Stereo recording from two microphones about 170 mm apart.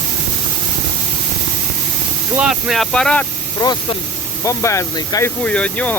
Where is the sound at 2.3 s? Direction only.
5° right (ahead or behind).